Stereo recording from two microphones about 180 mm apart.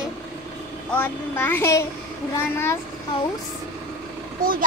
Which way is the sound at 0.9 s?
10° left (ahead or behind).